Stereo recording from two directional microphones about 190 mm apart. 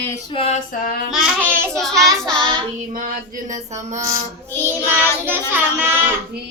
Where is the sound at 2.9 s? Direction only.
45° right (ahead or behind).